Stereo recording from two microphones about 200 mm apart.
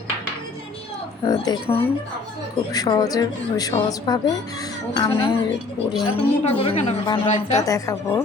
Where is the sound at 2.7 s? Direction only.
20° left (ahead or behind).